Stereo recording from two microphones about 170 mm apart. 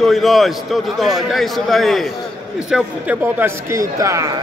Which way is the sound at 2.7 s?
10° right (ahead or behind).